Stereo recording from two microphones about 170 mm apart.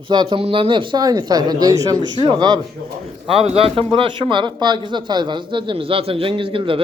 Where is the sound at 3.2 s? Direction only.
35° right (ahead or behind).